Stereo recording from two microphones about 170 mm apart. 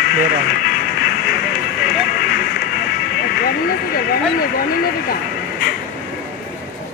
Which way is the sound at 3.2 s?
70° left (ahead or behind).